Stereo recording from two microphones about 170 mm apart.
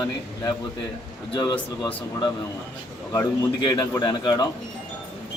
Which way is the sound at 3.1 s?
20° left (ahead or behind).